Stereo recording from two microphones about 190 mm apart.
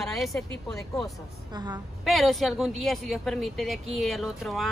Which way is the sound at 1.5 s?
20° right (ahead or behind).